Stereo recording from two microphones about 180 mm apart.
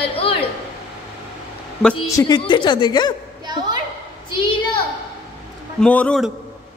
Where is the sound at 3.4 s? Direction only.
25° right (ahead or behind).